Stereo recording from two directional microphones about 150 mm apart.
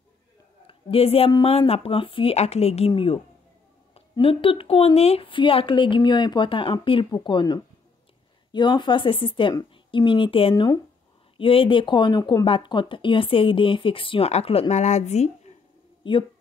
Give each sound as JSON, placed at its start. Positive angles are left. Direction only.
{"t": 0.7, "sound": "a man's voice", "side_deg": 40}
{"t": 16.0, "sound": "speech", "side_deg": 35}